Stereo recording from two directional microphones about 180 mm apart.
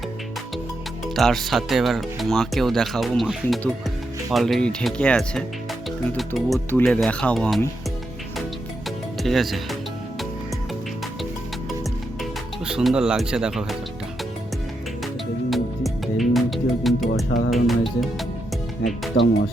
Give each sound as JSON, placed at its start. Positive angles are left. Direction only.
{"t": 1.0, "sound": "speech", "side_deg": 0}
{"t": 9.2, "sound": "speech", "side_deg": 0}
{"t": 12.2, "sound": "speech", "side_deg": -5}
{"t": 15.0, "sound": "music", "side_deg": 0}
{"t": 17.5, "sound": "speech", "side_deg": 0}
{"t": 19.1, "sound": "speech", "side_deg": 90}